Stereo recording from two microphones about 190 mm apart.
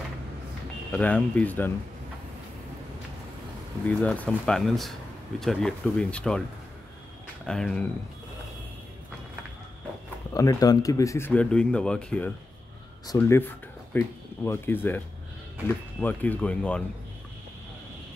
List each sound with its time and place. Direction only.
0.9 s speech: 10° left (ahead or behind)
3.8 s speech: 5° left (ahead or behind)
7.4 s speech: 5° left (ahead or behind)
10.3 s speech: 20° left (ahead or behind)
13.0 s speech: 15° left (ahead or behind)
16.0 s speech: 10° left (ahead or behind)